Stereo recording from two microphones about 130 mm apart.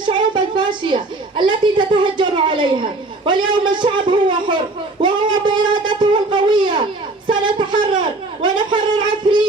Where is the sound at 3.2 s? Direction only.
35° right (ahead or behind).